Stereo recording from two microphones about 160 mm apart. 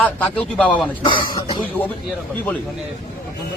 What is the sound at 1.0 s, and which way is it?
Speech, 30° left (ahead or behind).